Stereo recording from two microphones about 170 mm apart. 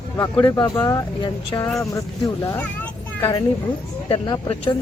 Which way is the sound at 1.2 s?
25° left (ahead or behind).